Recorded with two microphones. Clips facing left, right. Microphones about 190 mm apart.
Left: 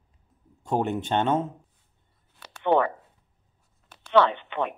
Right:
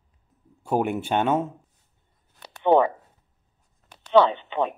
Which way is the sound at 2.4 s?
15° right (ahead or behind).